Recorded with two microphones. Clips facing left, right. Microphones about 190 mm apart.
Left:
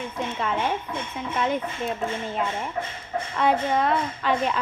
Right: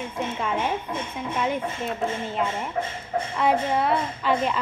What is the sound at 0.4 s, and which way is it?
A woman's voice, 10° right (ahead or behind).